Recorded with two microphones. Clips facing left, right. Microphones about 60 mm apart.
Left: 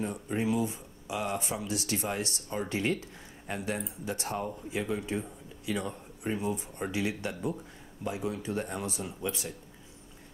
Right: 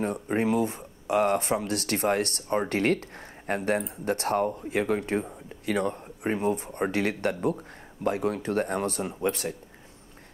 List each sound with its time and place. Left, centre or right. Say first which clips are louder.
0.0 s speech: right 5 dB; right